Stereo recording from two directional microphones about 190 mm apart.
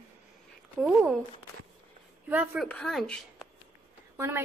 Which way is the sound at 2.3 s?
5° right (ahead or behind).